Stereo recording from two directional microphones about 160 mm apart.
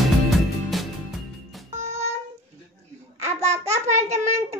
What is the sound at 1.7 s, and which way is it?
Music, 45° right (ahead or behind).